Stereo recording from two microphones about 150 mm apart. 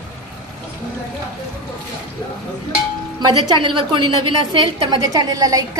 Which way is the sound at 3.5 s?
35° right (ahead or behind).